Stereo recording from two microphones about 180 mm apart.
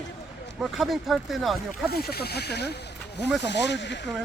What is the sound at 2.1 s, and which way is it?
Speech, 65° left (ahead or behind).